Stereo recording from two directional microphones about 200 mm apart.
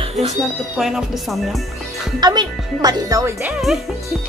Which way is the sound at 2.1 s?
20° right (ahead or behind).